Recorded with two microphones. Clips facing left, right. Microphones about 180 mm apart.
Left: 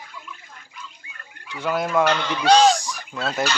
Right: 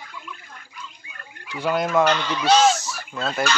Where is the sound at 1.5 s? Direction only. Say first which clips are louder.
Right 2 dB; 35° right (ahead or behind).